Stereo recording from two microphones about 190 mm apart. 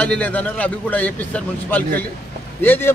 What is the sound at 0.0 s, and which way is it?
A man's voice, 10° left (ahead or behind).